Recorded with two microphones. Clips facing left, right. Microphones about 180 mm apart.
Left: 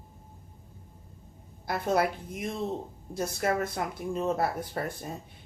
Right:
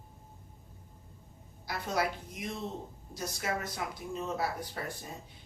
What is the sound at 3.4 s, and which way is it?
Speech, 50° left (ahead or behind).